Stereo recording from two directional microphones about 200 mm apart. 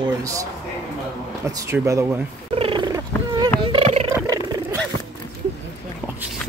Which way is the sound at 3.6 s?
30° right (ahead or behind).